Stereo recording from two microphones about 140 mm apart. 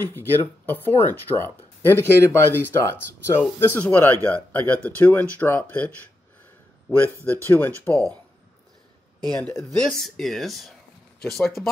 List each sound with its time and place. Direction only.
0.0 s speech: 15° left (ahead or behind)
6.9 s speech: 15° left (ahead or behind)
7.9 s speech: 25° right (ahead or behind)
9.6 s speech: 5° left (ahead or behind)